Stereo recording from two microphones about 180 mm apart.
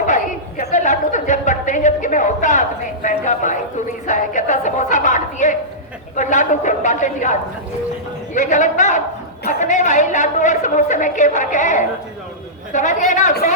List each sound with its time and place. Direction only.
0.1 s a woman's voice: 40° left (ahead or behind)